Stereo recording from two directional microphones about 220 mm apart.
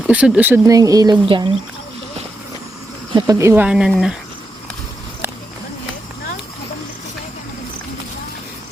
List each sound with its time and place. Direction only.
0.1 s speech: 5° right (ahead or behind); by 1.5 s 25° right (ahead or behind)
3.2 s speech: 15° right (ahead or behind)